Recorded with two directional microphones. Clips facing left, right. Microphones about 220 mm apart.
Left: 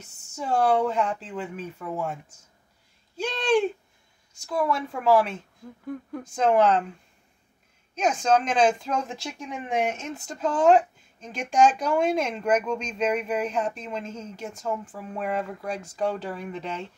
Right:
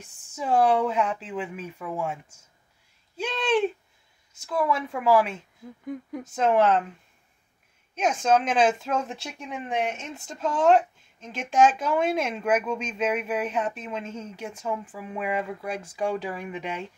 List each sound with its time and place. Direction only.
0.4 s speech: 5° right (ahead or behind)
3.2 s speech: 5° right (ahead or behind)
7.9 s speech: 5° right (ahead or behind)